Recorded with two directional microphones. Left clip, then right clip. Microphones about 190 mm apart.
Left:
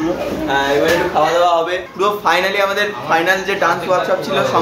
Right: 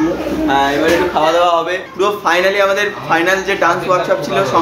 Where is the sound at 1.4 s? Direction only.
Centre (ahead or behind).